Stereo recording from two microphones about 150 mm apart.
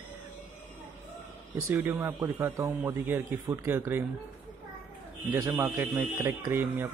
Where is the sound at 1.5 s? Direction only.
15° right (ahead or behind).